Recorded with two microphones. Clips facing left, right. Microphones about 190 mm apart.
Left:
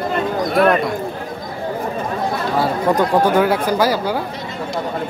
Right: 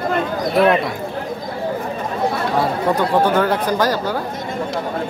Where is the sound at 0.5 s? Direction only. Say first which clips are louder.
Even; centre (ahead or behind).